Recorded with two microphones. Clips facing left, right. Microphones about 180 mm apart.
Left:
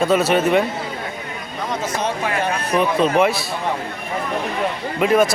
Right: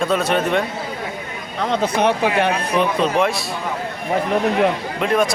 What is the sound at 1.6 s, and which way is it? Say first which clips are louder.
Speech: right 6 dB; 65° right (ahead or behind).